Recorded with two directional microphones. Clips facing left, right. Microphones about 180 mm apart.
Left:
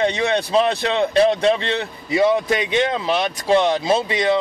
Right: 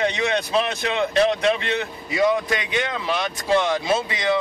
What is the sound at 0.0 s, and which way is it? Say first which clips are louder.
A man's voice: left 3 dB; 30° left (ahead or behind).